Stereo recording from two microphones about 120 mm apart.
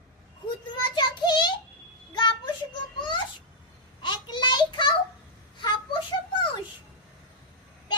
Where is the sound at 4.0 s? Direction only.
40° left (ahead or behind).